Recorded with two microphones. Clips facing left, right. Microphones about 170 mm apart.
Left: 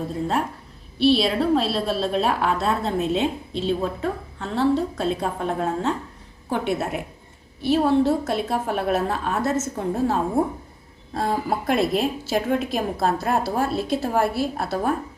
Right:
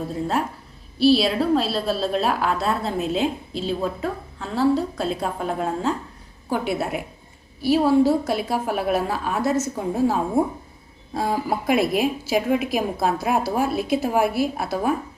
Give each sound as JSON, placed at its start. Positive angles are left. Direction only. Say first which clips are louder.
{"t": 0.1, "sound": "a woman's voice", "louder": "right 1 dB", "side_deg": 0}
{"t": 14.6, "sound": "a woman's voice", "louder": "right 1 dB", "side_deg": 0}